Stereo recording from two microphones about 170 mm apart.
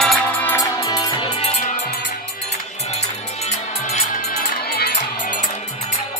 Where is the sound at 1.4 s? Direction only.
40° left (ahead or behind).